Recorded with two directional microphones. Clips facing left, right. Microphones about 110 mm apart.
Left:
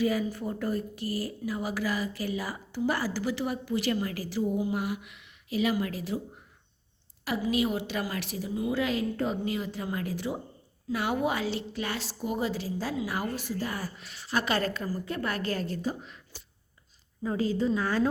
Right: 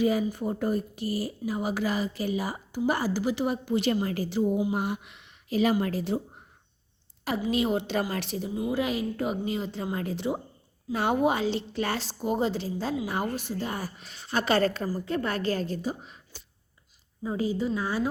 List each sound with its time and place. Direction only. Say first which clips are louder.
0.0 s a woman's voice: right 3 dB; 20° right (ahead or behind)
8.6 s a woman's voice: even; 15° right (ahead or behind)
17.2 s a woman's voice: left 1 dB; 15° right (ahead or behind)